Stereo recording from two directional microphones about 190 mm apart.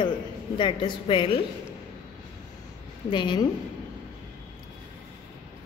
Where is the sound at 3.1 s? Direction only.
25° left (ahead or behind).